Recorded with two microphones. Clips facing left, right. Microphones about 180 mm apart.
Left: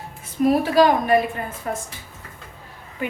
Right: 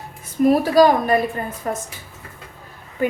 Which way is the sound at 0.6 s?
40° right (ahead or behind).